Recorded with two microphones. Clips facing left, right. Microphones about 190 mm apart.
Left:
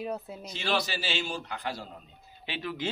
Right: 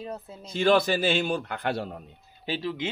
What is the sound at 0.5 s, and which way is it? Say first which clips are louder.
A man's voice: right 10 dB; 50° right (ahead or behind).